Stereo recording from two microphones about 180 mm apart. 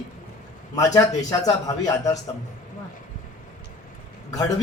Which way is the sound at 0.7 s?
20° left (ahead or behind).